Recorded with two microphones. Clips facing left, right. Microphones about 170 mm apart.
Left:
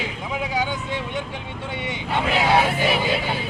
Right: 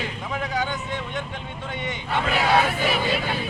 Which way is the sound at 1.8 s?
10° left (ahead or behind).